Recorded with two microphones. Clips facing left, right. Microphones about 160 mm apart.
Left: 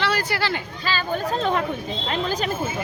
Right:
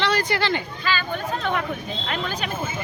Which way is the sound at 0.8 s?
35° left (ahead or behind).